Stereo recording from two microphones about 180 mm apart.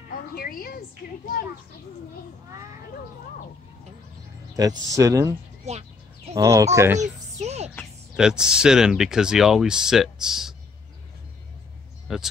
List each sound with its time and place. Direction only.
0.1 s a woman's voice: 55° left (ahead or behind)
4.6 s speech: 20° right (ahead or behind)
6.3 s speech: 15° right (ahead or behind)
7.3 s a sound: 35° right (ahead or behind)
8.2 s speech: 5° right (ahead or behind)
12.1 s speech: centre (ahead or behind)